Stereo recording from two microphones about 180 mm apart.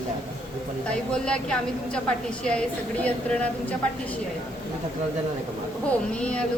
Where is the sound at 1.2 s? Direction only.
5° left (ahead or behind).